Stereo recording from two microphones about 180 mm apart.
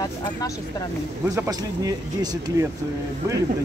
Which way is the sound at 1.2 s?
15° right (ahead or behind).